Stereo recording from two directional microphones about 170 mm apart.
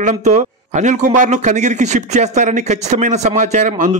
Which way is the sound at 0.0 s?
45° right (ahead or behind).